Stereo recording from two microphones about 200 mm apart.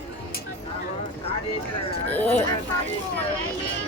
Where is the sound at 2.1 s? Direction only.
10° left (ahead or behind).